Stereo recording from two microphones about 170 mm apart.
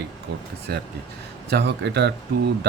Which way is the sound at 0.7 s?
70° right (ahead or behind).